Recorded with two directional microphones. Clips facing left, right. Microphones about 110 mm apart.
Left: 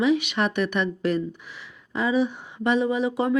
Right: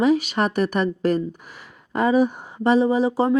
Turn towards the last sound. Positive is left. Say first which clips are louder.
# right 4 dB
turn(degrees=-35)  # may be behind; listen again after turning